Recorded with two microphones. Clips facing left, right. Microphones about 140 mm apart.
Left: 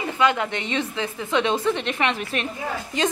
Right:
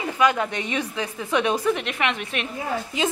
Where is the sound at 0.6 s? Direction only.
15° right (ahead or behind).